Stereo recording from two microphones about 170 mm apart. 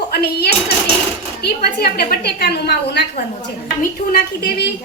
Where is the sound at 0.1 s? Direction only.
70° left (ahead or behind).